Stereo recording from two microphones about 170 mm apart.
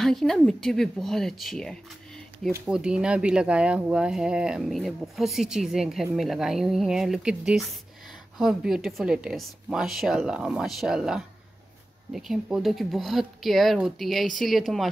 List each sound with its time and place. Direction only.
0.0 s speech: centre (ahead or behind)